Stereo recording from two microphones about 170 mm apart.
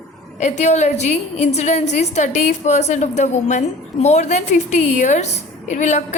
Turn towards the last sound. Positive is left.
turn(degrees=45)  # may be behind; listen again after turning